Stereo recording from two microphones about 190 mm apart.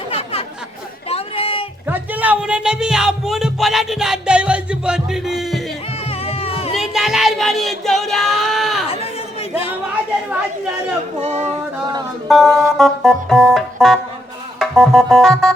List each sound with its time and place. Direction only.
0.1 s a sound: 30° left (ahead or behind)
1.9 s speech: 10° right (ahead or behind)
6.1 s music: 30° left (ahead or behind)
6.7 s music: centre (ahead or behind)
11.2 s a sound: 35° right (ahead or behind)
12.3 s music: centre (ahead or behind)